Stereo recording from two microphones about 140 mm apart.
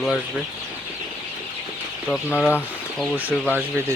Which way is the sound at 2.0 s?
10° left (ahead or behind).